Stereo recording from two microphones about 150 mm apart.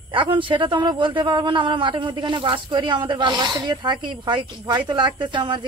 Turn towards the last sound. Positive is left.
turn(degrees=-30)  # may be behind; listen again after turning